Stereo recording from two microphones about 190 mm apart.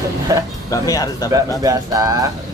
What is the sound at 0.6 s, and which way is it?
Speech, 20° left (ahead or behind).